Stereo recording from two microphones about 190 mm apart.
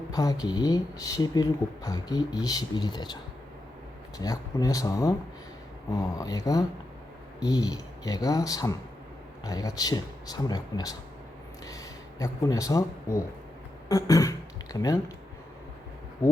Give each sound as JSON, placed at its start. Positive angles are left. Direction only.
{"t": 0.1, "sound": "speech", "side_deg": 20}
{"t": 4.2, "sound": "speech", "side_deg": 20}